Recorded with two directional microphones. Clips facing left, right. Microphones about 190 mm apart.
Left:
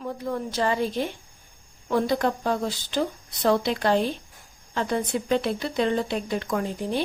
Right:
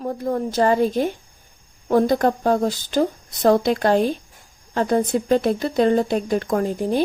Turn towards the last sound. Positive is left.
turn(degrees=-45)  # may be behind; listen again after turning